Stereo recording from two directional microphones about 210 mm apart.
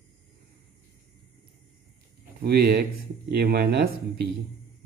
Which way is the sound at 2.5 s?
50° right (ahead or behind).